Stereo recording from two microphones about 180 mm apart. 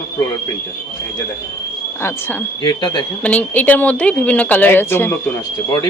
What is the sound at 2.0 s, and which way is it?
Speech, 10° left (ahead or behind).